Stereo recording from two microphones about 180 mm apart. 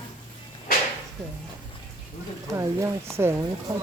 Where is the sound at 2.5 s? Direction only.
15° right (ahead or behind).